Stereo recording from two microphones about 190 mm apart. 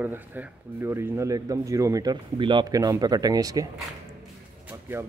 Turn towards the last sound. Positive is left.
turn(degrees=-10)  # may be behind; listen again after turning